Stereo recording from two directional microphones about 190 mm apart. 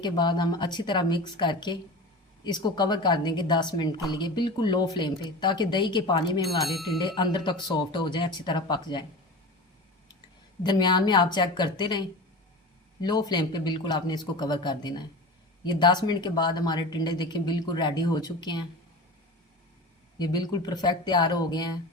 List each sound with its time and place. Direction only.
0.0 s a woman's voice: 25° left (ahead or behind)
6.6 s speech: centre (ahead or behind)
7.0 s a woman's voice: 25° left (ahead or behind)
10.6 s a woman's voice: 25° left (ahead or behind)
20.1 s a woman's voice: 20° left (ahead or behind)